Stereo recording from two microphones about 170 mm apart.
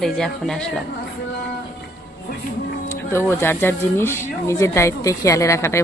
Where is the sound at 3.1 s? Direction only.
15° left (ahead or behind).